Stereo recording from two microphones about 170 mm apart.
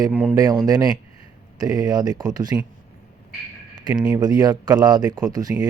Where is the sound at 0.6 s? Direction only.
20° right (ahead or behind).